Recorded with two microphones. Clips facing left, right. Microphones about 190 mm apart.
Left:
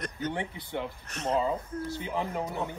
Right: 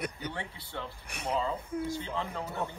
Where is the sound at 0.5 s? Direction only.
15° left (ahead or behind).